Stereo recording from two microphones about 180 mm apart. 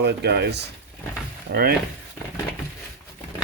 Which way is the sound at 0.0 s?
70° right (ahead or behind).